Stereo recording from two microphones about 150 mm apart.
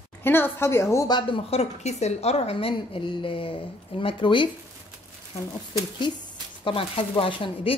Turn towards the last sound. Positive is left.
turn(degrees=35)  # may be behind; listen again after turning